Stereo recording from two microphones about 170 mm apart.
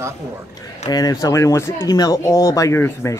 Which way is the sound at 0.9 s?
20° left (ahead or behind).